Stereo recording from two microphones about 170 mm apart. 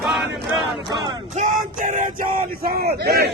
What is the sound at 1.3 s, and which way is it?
Speech, 50° right (ahead or behind).